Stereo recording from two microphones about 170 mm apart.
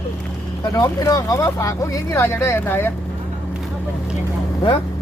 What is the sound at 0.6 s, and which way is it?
Speech, 20° left (ahead or behind).